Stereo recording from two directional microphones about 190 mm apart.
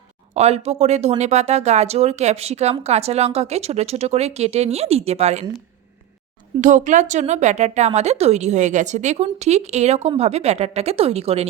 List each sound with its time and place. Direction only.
0.3 s a woman's voice: 35° right (ahead or behind)
6.6 s a woman's voice: 40° right (ahead or behind)